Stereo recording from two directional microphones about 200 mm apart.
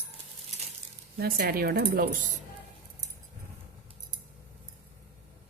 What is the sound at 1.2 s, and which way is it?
Speech, 50° right (ahead or behind).